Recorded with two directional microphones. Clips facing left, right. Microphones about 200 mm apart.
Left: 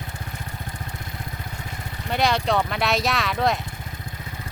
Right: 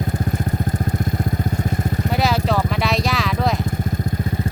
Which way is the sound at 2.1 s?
5° right (ahead or behind).